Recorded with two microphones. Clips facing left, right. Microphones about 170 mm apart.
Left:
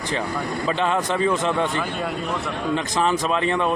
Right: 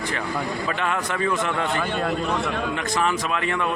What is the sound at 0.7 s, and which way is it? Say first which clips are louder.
Speech: left 7 dB; 25° left (ahead or behind).